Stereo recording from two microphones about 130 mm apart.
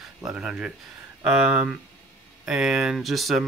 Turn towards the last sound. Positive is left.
turn(degrees=0)  # may be behind; listen again after turning